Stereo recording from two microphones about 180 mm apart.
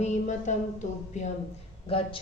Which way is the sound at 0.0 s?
40° left (ahead or behind).